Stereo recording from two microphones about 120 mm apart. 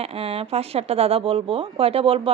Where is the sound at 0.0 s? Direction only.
60° right (ahead or behind).